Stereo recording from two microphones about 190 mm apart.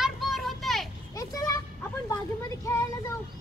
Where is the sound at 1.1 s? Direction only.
20° left (ahead or behind).